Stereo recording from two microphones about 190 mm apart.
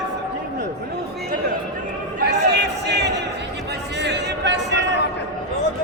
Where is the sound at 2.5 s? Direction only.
65° right (ahead or behind).